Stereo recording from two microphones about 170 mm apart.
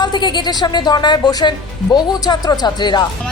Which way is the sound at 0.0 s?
25° left (ahead or behind).